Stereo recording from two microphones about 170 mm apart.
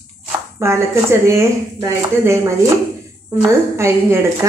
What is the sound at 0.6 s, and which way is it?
A woman's voice, 15° right (ahead or behind).